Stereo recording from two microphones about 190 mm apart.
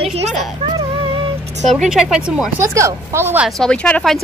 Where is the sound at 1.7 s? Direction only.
Centre (ahead or behind).